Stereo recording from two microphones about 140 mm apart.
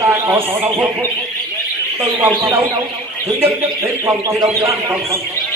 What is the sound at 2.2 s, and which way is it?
A man's voice, 15° right (ahead or behind).